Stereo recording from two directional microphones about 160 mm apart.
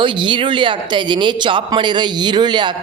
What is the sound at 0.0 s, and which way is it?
Speech, 30° right (ahead or behind).